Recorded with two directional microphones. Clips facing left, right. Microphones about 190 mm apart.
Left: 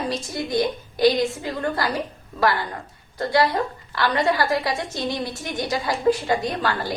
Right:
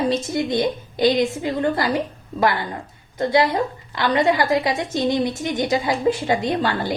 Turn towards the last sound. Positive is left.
turn(degrees=-25)  # may be behind; listen again after turning